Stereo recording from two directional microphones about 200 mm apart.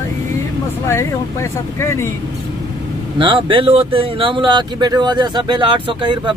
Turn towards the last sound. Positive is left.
turn(degrees=-25)  # may be behind; listen again after turning